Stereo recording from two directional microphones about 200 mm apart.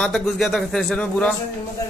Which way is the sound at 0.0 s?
Centre (ahead or behind).